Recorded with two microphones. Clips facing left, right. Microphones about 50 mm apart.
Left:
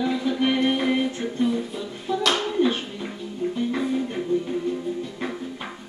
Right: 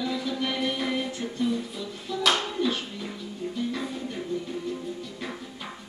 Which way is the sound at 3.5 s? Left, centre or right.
Left.